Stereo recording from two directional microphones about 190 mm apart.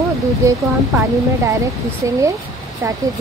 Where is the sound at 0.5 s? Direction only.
15° right (ahead or behind).